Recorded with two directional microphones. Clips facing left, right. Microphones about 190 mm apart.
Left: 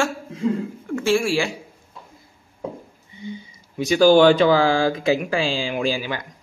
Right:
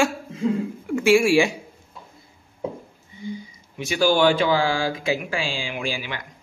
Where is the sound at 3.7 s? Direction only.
40° left (ahead or behind).